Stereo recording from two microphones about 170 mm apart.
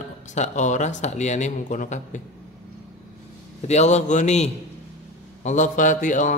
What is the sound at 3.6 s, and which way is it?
Speech, 40° left (ahead or behind).